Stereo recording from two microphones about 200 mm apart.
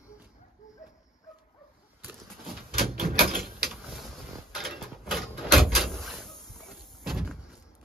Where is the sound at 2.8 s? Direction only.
45° right (ahead or behind).